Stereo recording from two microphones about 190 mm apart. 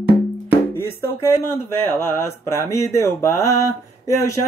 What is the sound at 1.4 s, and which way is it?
Speech, 15° left (ahead or behind).